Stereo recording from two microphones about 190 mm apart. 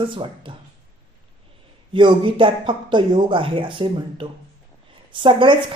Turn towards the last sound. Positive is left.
turn(degrees=-25)  # may be behind; listen again after turning